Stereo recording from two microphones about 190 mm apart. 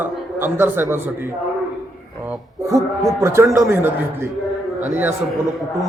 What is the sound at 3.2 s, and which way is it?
A man's voice, 15° right (ahead or behind).